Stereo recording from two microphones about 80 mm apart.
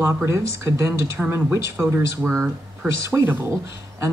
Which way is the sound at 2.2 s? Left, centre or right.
Centre.